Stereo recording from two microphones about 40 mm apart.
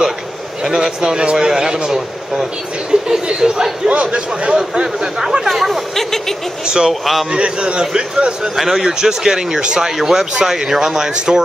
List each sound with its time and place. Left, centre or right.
0.7 s a man's voice: centre
4.6 s speech: centre
5.5 s speech: centre
6.6 s speech: centre
6.9 s speech: centre
7.2 s a man's voice: right
8.5 s speech: centre